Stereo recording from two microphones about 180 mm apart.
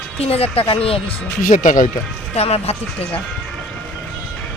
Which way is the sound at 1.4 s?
45° left (ahead or behind).